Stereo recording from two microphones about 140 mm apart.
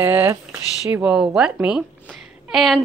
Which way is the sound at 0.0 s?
15° right (ahead or behind).